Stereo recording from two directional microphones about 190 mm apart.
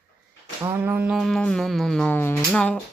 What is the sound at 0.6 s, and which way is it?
Speech, 10° right (ahead or behind).